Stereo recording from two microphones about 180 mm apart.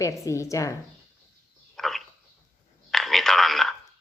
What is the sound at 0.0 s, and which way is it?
Speech, 15° left (ahead or behind).